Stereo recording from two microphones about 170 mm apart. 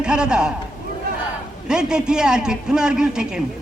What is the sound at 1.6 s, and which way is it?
A man's voice, 5° right (ahead or behind).